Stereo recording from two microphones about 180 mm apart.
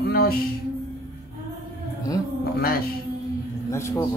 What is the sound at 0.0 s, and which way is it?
Music, 60° left (ahead or behind).